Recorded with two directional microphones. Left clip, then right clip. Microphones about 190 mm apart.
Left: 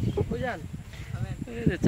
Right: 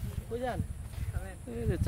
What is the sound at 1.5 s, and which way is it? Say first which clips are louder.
Speech: left 6 dB; 5° right (ahead or behind).